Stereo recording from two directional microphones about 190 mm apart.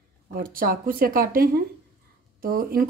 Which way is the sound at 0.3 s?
50° right (ahead or behind).